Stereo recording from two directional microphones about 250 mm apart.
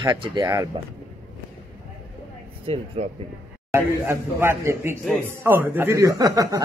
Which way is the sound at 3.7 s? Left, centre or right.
Centre.